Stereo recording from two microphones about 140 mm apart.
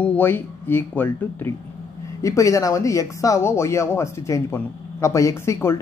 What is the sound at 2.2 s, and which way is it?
Speech, 25° left (ahead or behind).